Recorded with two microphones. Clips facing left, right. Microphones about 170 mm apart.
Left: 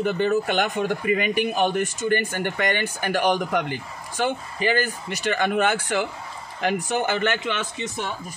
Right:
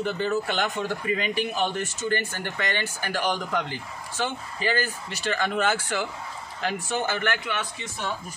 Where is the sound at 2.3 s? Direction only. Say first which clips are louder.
Left 6 dB; 55° left (ahead or behind).